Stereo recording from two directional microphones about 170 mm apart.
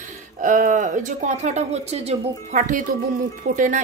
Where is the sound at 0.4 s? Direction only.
50° right (ahead or behind).